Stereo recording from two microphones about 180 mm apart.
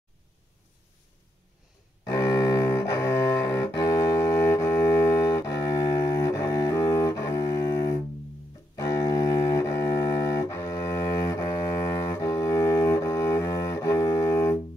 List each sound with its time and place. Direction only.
2.0 s cello: 20° left (ahead or behind)